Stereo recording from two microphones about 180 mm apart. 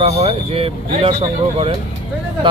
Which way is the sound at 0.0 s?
35° right (ahead or behind).